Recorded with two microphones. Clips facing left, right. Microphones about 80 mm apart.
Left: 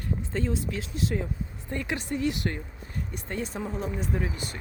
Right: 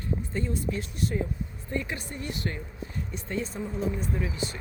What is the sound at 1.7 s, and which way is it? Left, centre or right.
Speech, left.